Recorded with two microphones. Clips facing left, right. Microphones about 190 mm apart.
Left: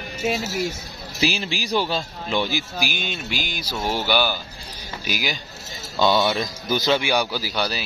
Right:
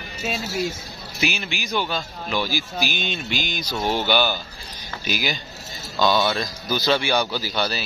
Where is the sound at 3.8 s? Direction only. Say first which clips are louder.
Right 2 dB; 20° right (ahead or behind).